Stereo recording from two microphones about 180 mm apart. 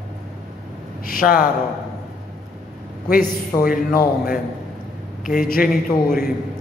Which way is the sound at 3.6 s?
55° left (ahead or behind).